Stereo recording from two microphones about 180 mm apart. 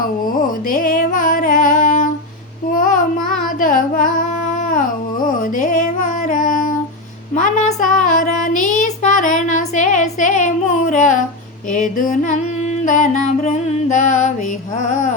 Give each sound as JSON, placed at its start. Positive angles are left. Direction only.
{"t": 0.7, "sound": "music", "side_deg": 50}
{"t": 4.5, "sound": "dog", "side_deg": 45}
{"t": 5.4, "sound": "music", "side_deg": 45}
{"t": 7.3, "sound": "child singing", "side_deg": 45}
{"t": 11.7, "sound": "a sound", "side_deg": 45}
{"t": 12.8, "sound": "music", "side_deg": 45}
{"t": 14.8, "sound": "a sound", "side_deg": 45}